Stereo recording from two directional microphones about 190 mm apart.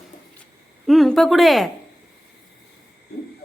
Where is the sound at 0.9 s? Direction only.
Centre (ahead or behind).